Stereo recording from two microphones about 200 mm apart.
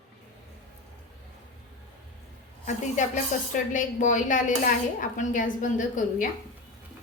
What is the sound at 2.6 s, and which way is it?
Speech, 40° left (ahead or behind).